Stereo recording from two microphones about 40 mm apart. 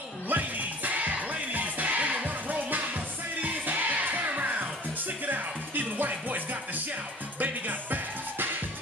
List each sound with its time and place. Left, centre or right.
0.3 s music: right